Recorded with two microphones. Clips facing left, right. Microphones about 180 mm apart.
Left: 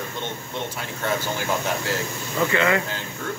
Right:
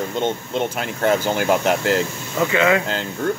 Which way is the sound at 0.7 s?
75° right (ahead or behind).